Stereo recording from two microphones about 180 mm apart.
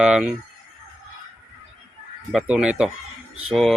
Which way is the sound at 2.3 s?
5° right (ahead or behind).